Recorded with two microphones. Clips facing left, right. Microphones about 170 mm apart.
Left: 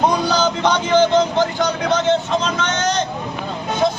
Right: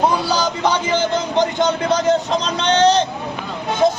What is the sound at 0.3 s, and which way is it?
A man's voice, 10° right (ahead or behind).